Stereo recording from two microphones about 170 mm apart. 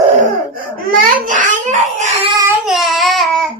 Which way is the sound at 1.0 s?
50° right (ahead or behind).